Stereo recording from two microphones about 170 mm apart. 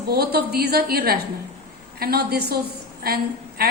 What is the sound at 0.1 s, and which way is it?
A woman's voice, 65° right (ahead or behind).